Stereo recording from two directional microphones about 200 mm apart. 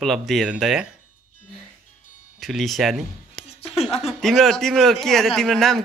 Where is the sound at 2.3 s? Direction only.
Centre (ahead or behind).